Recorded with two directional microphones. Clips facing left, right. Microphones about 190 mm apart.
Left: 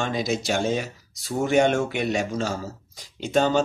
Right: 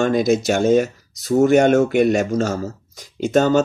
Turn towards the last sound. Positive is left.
turn(degrees=-45)  # may be behind; listen again after turning